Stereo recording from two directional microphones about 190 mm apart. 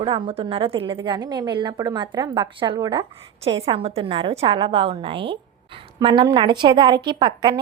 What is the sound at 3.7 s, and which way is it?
A woman's voice, 30° right (ahead or behind).